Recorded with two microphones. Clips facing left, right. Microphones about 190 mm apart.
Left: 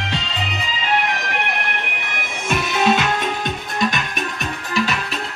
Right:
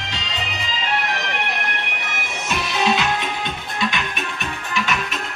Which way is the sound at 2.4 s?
50° left (ahead or behind).